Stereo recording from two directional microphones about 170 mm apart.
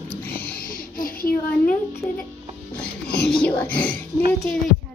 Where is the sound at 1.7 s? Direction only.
10° left (ahead or behind).